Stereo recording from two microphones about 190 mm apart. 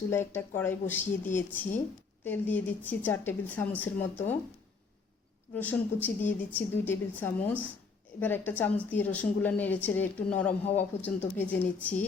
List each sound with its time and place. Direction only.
0.1 s speech: 10° left (ahead or behind)
5.5 s speech: 10° left (ahead or behind)